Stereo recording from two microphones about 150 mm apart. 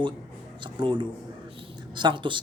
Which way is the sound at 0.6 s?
30° right (ahead or behind).